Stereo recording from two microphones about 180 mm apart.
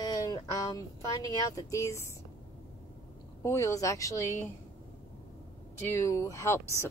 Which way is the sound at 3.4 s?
15° left (ahead or behind).